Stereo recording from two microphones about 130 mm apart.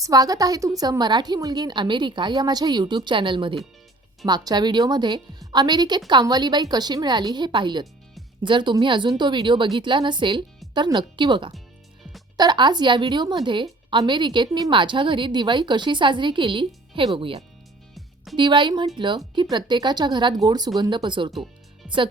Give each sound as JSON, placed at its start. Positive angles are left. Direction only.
{"t": 0.0, "sound": "a woman's voice", "side_deg": -30}
{"t": 21.8, "sound": "speech", "side_deg": 0}